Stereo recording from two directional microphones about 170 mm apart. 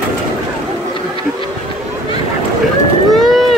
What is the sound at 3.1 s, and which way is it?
Boat, centre (ahead or behind).